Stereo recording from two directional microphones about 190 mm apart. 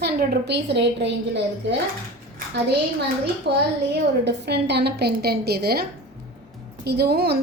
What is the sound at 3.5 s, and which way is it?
A woman's voice, 60° right (ahead or behind).